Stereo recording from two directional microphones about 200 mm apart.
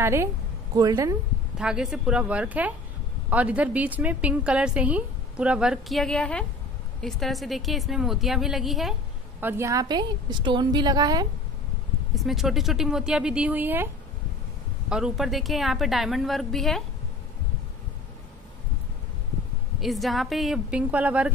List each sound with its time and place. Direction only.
0.0 s a woman's voice: 15° right (ahead or behind)
1.6 s a woman's voice: 5° right (ahead or behind)
9.4 s a woman's voice: 10° right (ahead or behind)
12.2 s a woman's voice: centre (ahead or behind)
14.9 s a woman's voice: 5° right (ahead or behind)
19.8 s a woman's voice: centre (ahead or behind)